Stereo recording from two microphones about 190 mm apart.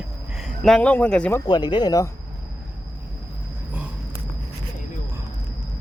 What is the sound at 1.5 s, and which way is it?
Speech, 25° left (ahead or behind).